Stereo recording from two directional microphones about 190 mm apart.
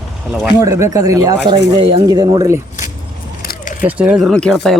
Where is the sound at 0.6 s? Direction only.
15° right (ahead or behind).